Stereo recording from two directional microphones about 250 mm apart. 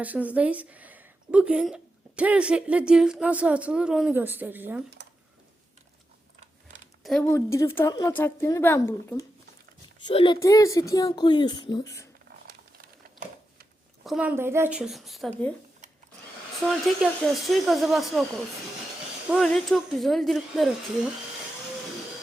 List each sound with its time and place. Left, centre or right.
0.0 s a woman's voice: centre
5.0 s a sound: right
7.0 s a woman's voice: centre
10.1 s a woman's voice: centre
12.5 s a sound: right
14.0 s a woman's voice: centre
16.6 s a woman's voice: centre
19.3 s a woman's voice: centre